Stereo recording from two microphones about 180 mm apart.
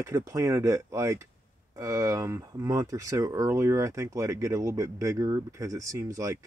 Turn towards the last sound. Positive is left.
turn(degrees=-15)  # may be behind; listen again after turning